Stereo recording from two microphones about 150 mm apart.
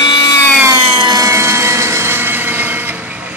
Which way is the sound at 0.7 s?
30° right (ahead or behind).